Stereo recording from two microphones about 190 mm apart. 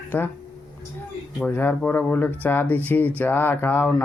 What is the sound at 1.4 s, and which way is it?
Speech, 10° left (ahead or behind).